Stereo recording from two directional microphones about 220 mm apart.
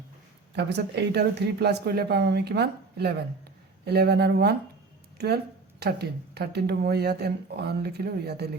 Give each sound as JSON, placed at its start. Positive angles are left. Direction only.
{"t": 0.5, "sound": "speech", "side_deg": -50}